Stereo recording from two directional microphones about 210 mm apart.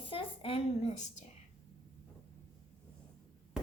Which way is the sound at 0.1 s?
25° left (ahead or behind).